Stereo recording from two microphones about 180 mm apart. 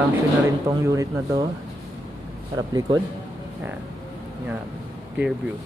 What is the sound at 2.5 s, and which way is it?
Speech, 20° right (ahead or behind).